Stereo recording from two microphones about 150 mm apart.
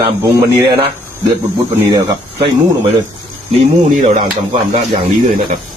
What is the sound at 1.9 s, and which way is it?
Speech, 25° right (ahead or behind).